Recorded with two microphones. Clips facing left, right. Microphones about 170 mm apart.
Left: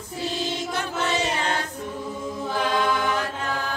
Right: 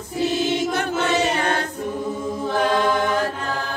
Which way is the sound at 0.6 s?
65° right (ahead or behind).